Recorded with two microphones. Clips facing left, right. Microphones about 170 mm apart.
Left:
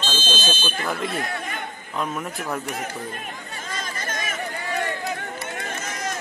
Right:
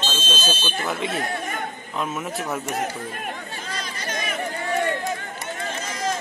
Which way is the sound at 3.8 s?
50° left (ahead or behind).